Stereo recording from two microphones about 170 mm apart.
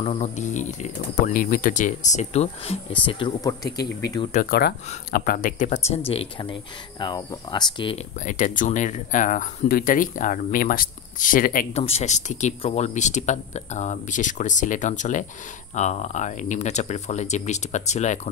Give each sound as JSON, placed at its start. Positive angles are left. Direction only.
{"t": 0.0, "sound": "speech", "side_deg": 40}
{"t": 4.5, "sound": "speech", "side_deg": 70}
{"t": 5.1, "sound": "speech", "side_deg": 55}
{"t": 8.3, "sound": "speech", "side_deg": 50}
{"t": 11.7, "sound": "speech", "side_deg": 35}